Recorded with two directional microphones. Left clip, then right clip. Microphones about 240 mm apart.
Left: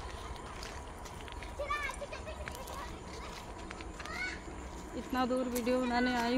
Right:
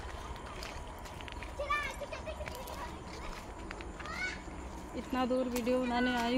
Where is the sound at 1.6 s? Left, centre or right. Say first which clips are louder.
Right 2 dB; right.